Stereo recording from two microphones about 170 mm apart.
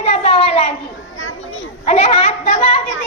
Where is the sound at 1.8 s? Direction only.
40° left (ahead or behind).